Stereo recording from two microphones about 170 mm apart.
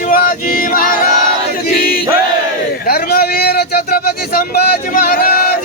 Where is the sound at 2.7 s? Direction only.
60° left (ahead or behind).